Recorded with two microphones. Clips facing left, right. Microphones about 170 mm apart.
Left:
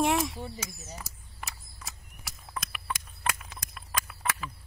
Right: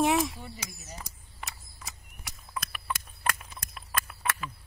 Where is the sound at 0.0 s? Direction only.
Centre (ahead or behind).